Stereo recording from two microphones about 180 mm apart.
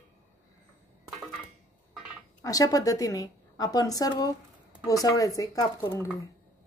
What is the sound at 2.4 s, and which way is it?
A woman's voice, 20° left (ahead or behind).